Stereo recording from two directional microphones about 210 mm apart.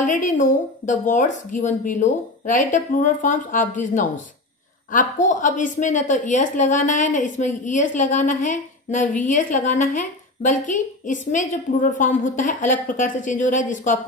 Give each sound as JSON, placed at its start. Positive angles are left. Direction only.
{"t": 0.0, "sound": "a woman's voice", "side_deg": 35}